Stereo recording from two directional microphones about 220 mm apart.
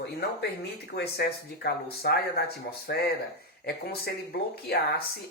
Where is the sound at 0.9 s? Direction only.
45° left (ahead or behind).